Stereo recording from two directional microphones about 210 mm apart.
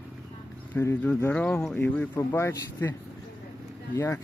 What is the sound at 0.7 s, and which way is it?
Speech, 10° left (ahead or behind).